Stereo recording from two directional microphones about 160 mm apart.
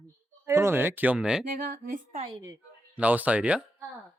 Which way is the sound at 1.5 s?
60° right (ahead or behind).